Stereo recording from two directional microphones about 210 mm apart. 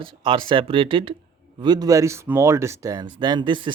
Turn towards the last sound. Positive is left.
turn(degrees=-20)  # may be behind; listen again after turning